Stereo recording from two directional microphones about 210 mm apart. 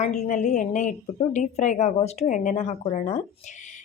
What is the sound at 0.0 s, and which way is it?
A woman's voice, 35° left (ahead or behind).